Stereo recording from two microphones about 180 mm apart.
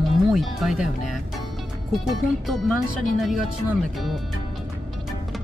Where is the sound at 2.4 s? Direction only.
Centre (ahead or behind).